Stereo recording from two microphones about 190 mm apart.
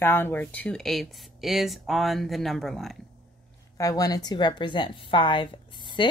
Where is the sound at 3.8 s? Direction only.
20° left (ahead or behind).